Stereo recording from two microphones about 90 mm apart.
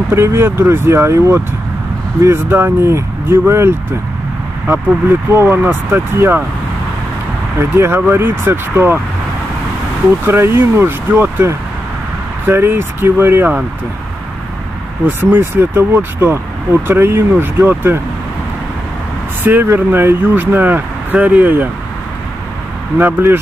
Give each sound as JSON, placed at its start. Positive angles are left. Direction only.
{"t": 0.1, "sound": "speech", "side_deg": -30}
{"t": 5.3, "sound": "speech", "side_deg": -30}
{"t": 7.7, "sound": "speech", "side_deg": -25}
{"t": 10.2, "sound": "speech", "side_deg": -25}
{"t": 15.0, "sound": "speech", "side_deg": -25}
{"t": 19.4, "sound": "speech", "side_deg": -25}
{"t": 22.9, "sound": "speech", "side_deg": -25}